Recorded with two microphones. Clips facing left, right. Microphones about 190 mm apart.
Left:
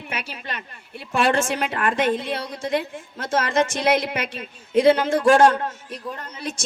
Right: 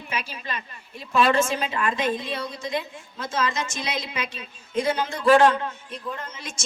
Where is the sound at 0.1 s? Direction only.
70° left (ahead or behind); by 6.6 s 35° left (ahead or behind).